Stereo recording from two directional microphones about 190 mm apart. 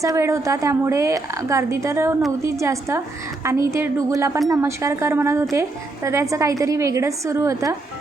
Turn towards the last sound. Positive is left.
turn(degrees=-15)  # may be behind; listen again after turning